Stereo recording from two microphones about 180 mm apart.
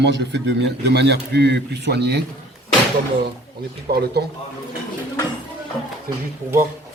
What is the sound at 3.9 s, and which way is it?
Speech, 65° right (ahead or behind).